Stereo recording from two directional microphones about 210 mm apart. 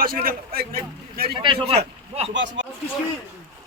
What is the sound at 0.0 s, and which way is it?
A man's voice, 45° right (ahead or behind).